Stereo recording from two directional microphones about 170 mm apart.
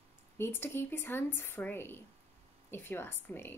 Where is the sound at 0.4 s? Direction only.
15° left (ahead or behind).